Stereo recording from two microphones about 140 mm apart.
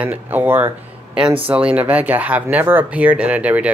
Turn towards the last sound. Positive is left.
turn(degrees=-10)  # may be behind; listen again after turning